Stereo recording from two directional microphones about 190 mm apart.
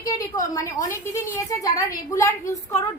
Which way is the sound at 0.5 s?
15° left (ahead or behind).